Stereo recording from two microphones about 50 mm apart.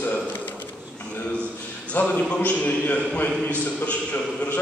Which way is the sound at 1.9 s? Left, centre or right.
Left.